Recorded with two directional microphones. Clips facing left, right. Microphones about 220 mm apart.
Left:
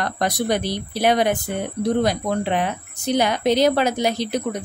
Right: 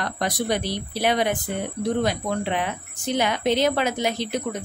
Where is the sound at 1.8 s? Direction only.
40° left (ahead or behind).